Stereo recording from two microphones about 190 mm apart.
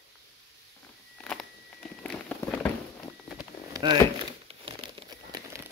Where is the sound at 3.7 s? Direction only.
25° right (ahead or behind).